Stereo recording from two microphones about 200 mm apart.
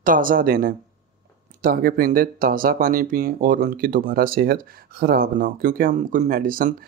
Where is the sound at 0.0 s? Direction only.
45° right (ahead or behind).